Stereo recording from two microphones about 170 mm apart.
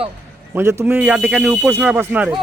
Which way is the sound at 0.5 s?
15° right (ahead or behind).